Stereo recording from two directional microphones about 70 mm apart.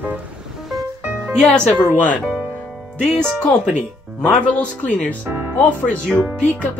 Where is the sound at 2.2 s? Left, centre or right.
Centre.